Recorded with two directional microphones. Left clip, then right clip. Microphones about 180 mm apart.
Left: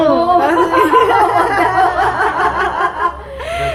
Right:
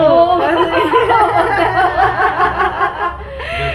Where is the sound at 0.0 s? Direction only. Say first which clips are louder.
Right 1 dB; 40° left (ahead or behind).